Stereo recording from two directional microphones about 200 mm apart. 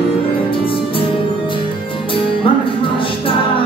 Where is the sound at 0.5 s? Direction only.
25° left (ahead or behind).